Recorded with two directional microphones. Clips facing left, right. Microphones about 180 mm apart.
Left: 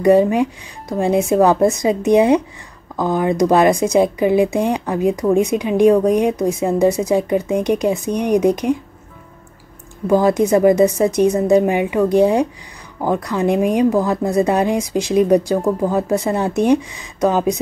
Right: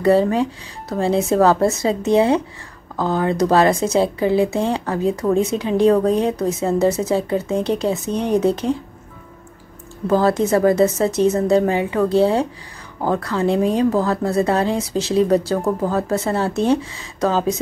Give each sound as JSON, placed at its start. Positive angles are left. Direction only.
{"t": 0.0, "sound": "speech", "side_deg": 15}
{"t": 10.0, "sound": "speech", "side_deg": 15}